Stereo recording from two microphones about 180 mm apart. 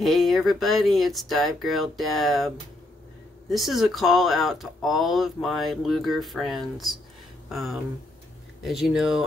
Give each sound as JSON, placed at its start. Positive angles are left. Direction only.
{"t": 0.0, "sound": "speech", "side_deg": 0}